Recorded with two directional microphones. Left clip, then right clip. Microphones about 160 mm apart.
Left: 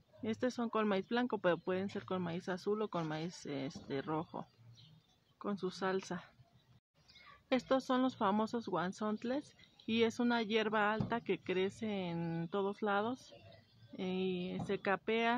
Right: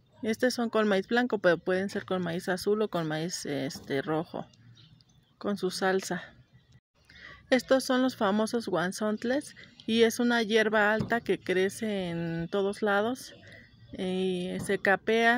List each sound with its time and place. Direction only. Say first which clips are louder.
0.2 s speech: right 10 dB; 20° right (ahead or behind)
7.4 s speech: right 9 dB; 20° right (ahead or behind)